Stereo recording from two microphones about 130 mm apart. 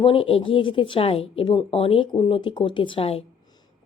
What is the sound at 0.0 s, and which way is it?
Speech, 45° left (ahead or behind).